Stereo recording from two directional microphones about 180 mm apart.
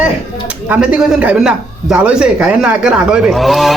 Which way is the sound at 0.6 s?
10° right (ahead or behind).